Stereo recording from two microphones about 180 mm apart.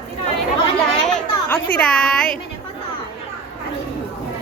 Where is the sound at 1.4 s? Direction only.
5° left (ahead or behind).